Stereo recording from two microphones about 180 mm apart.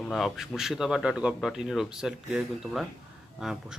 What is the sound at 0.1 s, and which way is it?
Speech, centre (ahead or behind).